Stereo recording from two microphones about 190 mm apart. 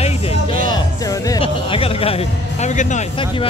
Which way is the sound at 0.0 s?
35° left (ahead or behind).